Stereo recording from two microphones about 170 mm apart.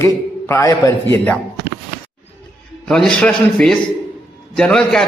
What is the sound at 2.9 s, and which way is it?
A man's voice, 5° left (ahead or behind).